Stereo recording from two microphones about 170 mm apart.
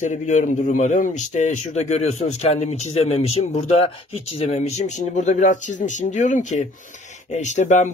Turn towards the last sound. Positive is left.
turn(degrees=45)  # may be behind; listen again after turning